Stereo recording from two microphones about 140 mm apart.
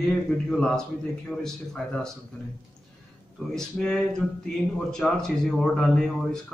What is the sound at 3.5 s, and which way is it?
Speech, 5° left (ahead or behind).